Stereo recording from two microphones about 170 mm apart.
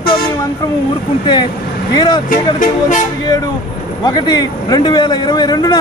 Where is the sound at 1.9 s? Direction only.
25° left (ahead or behind).